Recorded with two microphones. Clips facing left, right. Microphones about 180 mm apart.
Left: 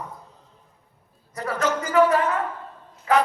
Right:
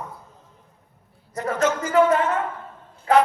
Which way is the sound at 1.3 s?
35° left (ahead or behind).